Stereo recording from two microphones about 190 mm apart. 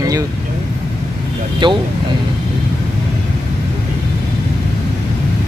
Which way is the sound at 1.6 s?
25° right (ahead or behind).